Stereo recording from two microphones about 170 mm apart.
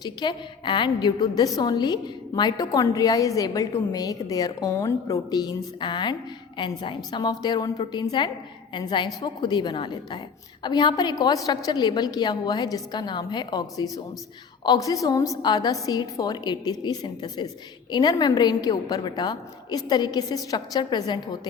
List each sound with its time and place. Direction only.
0.0 s a woman's voice: 25° left (ahead or behind)